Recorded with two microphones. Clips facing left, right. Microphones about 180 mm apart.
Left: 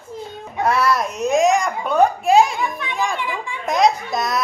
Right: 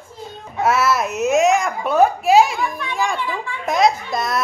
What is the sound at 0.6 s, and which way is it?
Babbling, 5° right (ahead or behind).